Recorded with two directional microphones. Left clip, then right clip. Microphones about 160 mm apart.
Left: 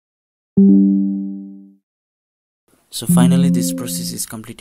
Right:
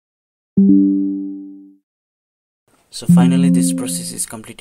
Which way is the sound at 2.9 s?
45° left (ahead or behind).